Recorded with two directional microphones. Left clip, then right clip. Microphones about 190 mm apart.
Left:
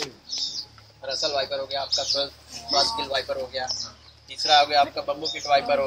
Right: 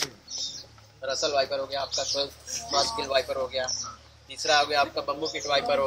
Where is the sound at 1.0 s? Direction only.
30° right (ahead or behind).